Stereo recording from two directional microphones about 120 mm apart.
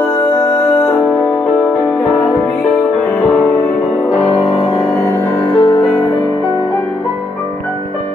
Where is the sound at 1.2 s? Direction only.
Centre (ahead or behind); by 5.8 s 25° left (ahead or behind).